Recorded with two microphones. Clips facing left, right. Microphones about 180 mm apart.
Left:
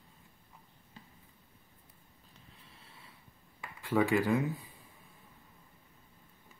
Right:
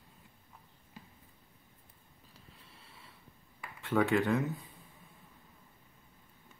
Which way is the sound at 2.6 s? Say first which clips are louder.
Even; centre (ahead or behind).